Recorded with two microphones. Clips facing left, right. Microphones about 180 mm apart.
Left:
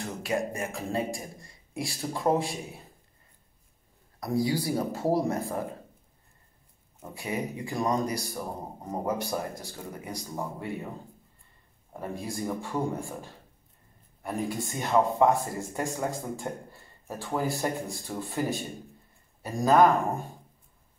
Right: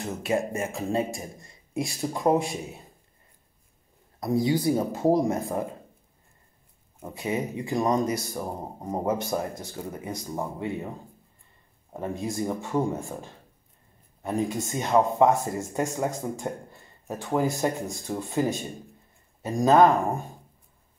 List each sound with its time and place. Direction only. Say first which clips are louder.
0.0 s a man's voice: right 3 dB; 25° right (ahead or behind)
4.2 s a man's voice: right 4 dB; 20° right (ahead or behind)
7.0 s a man's voice: right 4 dB; 20° right (ahead or behind)
11.9 s a man's voice: right 4 dB; 20° right (ahead or behind)